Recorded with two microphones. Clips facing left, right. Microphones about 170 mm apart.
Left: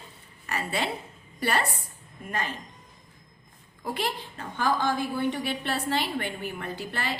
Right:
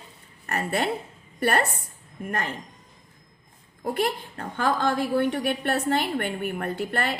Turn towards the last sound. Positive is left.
turn(degrees=-55)  # may be behind; listen again after turning